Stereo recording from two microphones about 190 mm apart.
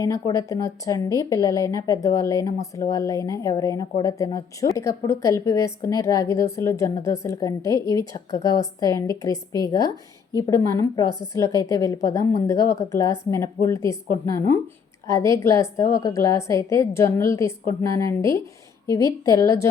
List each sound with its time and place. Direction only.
0.0 s a woman's voice: 15° left (ahead or behind)